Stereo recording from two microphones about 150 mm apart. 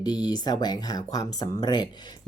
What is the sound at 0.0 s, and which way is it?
Speech, 25° left (ahead or behind).